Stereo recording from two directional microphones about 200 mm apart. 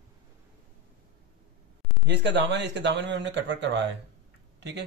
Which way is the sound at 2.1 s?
60° right (ahead or behind).